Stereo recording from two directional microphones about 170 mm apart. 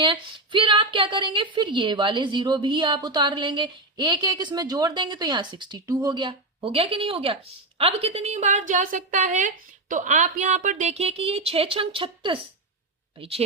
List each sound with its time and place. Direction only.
0.0 s a woman's voice: 30° right (ahead or behind)